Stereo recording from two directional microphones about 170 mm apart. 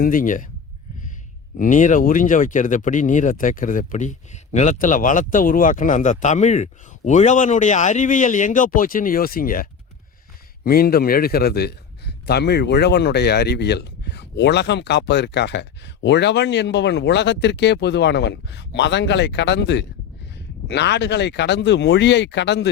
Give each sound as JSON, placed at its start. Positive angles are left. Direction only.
{"t": 0.0, "sound": "speech", "side_deg": 55}
{"t": 1.5, "sound": "a man's voice", "side_deg": 50}